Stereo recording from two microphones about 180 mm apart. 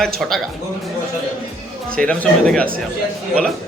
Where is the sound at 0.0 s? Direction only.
Centre (ahead or behind).